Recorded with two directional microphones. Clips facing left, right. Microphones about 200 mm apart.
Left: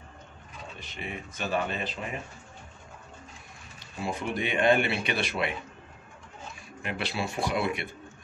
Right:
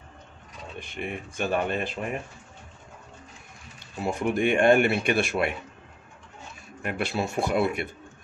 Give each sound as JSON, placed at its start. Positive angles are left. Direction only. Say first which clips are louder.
{"t": 0.7, "sound": "speech", "louder": "right 5 dB", "side_deg": -55}
{"t": 4.0, "sound": "speech", "louder": "right 6 dB", "side_deg": -50}
{"t": 6.8, "sound": "speech", "louder": "right 4 dB", "side_deg": -45}